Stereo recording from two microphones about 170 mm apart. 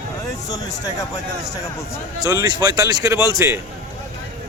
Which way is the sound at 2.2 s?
20° right (ahead or behind).